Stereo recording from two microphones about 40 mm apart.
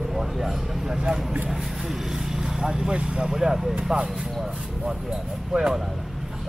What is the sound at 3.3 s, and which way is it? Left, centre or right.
Speech, centre.